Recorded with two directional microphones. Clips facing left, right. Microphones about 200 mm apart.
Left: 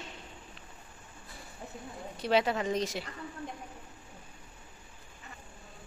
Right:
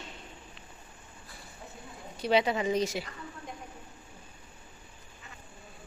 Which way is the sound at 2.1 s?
Centre (ahead or behind).